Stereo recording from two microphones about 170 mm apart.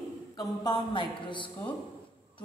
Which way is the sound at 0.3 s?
25° left (ahead or behind).